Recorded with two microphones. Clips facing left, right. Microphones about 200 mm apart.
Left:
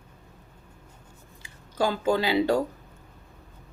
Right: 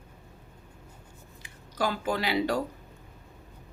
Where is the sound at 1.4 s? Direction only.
25° left (ahead or behind).